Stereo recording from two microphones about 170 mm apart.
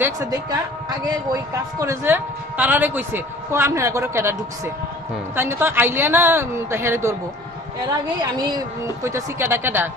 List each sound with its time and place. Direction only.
0.0 s a woman's voice: 20° right (ahead or behind)